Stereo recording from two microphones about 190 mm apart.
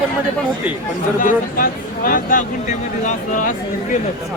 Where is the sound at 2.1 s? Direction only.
45° left (ahead or behind).